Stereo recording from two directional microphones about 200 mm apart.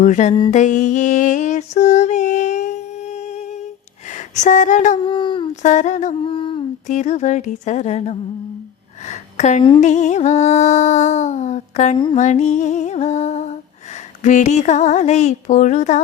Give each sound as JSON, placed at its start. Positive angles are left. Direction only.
{"t": 0.0, "sound": "music", "side_deg": 40}
{"t": 4.1, "sound": "a sound", "side_deg": 40}
{"t": 5.0, "sound": "speech", "side_deg": 25}
{"t": 5.6, "sound": "music", "side_deg": 35}
{"t": 6.8, "sound": "music", "side_deg": 35}
{"t": 9.0, "sound": "speech", "side_deg": 35}
{"t": 9.8, "sound": "music", "side_deg": 35}